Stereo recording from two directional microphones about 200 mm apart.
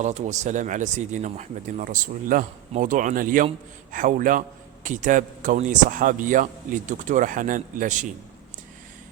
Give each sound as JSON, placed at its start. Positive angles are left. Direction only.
{"t": 0.0, "sound": "a man's voice", "side_deg": -35}